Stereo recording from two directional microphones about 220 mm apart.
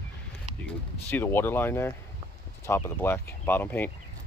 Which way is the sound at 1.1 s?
10° left (ahead or behind).